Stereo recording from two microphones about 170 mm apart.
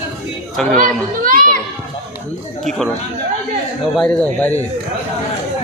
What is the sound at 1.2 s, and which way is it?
Children playing, 55° right (ahead or behind).